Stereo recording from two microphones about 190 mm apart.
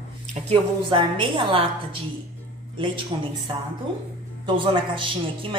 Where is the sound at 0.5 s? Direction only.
25° right (ahead or behind).